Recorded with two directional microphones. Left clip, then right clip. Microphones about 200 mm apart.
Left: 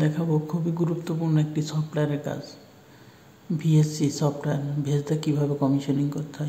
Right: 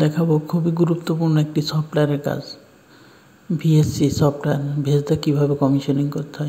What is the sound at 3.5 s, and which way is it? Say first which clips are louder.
A woman's voice: right 5 dB; 20° right (ahead or behind).